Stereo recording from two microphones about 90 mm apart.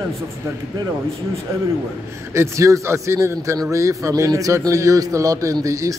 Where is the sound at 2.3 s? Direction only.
35° right (ahead or behind).